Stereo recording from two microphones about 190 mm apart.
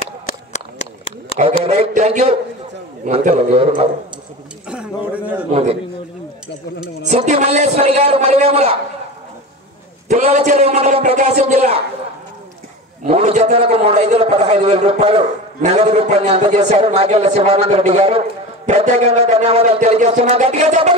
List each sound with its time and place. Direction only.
0.5 s a sound: 35° left (ahead or behind)
1.4 s a man's voice: 30° right (ahead or behind)
4.6 s a sound: 5° right (ahead or behind)
5.5 s a man's voice: 35° right (ahead or behind)
7.0 s a man's voice: 40° right (ahead or behind)
10.0 s a man's voice: 40° right (ahead or behind)
13.0 s a man's voice: 35° right (ahead or behind)